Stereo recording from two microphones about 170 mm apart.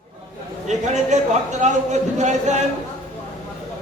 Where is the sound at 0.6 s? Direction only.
45° right (ahead or behind).